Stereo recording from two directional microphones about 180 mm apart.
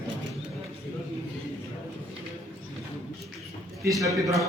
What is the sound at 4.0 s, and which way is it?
Speech, 20° right (ahead or behind).